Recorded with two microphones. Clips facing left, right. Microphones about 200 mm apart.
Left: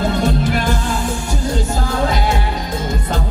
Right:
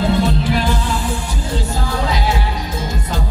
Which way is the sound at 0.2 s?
45° left (ahead or behind).